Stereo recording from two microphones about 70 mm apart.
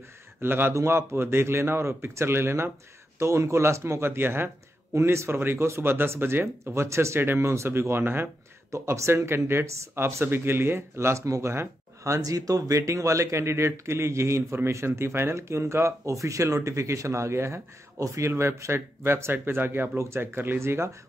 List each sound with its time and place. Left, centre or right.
0.4 s speech: right
8.7 s speech: right